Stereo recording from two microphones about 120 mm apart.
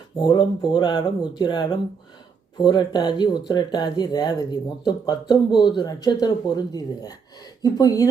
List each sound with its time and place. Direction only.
0.2 s speech: 40° left (ahead or behind)